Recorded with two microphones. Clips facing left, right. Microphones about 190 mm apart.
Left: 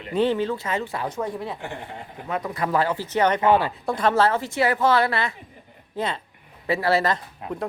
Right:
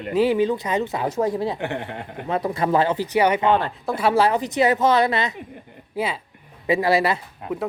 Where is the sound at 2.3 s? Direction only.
30° right (ahead or behind); by 3.5 s 10° right (ahead or behind).